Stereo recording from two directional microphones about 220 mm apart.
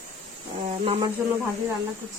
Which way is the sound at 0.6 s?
25° right (ahead or behind).